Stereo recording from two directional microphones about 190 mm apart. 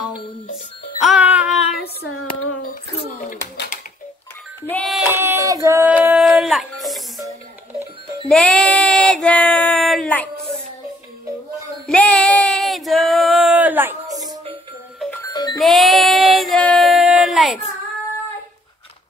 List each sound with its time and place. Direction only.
0.9 s music: 5° right (ahead or behind)
2.6 s a sound: 45° left (ahead or behind)
4.6 s music: 5° left (ahead or behind)
5.1 s music: 10° right (ahead or behind)
8.3 s child singing: 5° left (ahead or behind)
11.8 s female singing: 5° left (ahead or behind)
14.1 s music: 20° right (ahead or behind)
15.3 s music: 20° left (ahead or behind)
15.6 s child singing: centre (ahead or behind)